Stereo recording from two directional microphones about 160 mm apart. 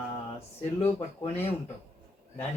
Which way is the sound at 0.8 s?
40° left (ahead or behind).